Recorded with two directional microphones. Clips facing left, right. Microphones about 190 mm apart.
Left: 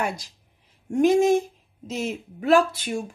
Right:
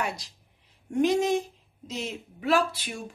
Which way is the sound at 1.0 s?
50° left (ahead or behind).